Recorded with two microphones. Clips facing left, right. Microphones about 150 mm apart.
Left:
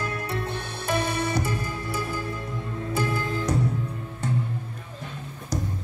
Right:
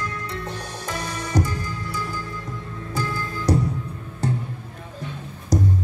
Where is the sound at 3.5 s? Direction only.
35° right (ahead or behind).